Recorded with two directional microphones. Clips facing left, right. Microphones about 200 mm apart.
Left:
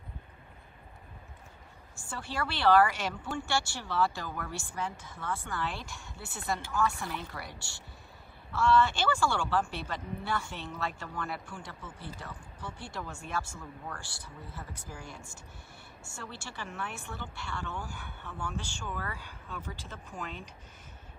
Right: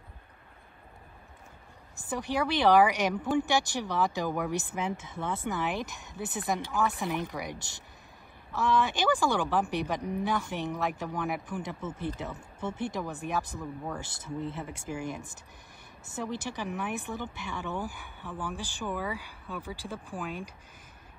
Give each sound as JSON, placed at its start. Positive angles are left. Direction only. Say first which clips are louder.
{"t": 2.0, "sound": "speech", "louder": "right 7 dB", "side_deg": -15}